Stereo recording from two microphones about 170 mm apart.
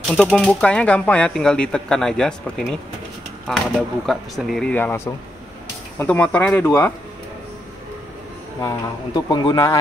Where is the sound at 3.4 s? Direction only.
Centre (ahead or behind).